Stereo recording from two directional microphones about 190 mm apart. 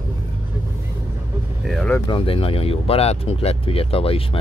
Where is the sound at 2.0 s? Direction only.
30° left (ahead or behind).